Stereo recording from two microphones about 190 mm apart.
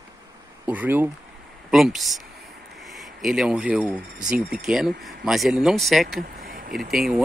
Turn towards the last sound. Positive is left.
turn(degrees=0)  # may be behind; listen again after turning